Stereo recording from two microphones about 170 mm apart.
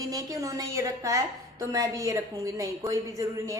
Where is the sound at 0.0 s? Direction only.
20° right (ahead or behind).